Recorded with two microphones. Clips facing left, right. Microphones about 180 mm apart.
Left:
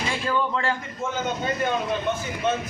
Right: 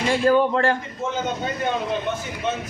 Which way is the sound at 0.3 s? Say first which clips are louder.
Right 7 dB; 50° right (ahead or behind).